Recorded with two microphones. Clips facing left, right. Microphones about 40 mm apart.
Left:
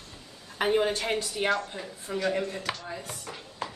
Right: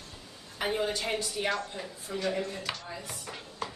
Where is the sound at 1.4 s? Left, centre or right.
Centre.